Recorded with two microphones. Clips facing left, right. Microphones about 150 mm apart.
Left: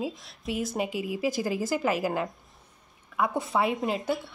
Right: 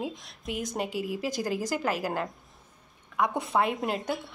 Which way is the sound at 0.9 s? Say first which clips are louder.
Even; 45° right (ahead or behind).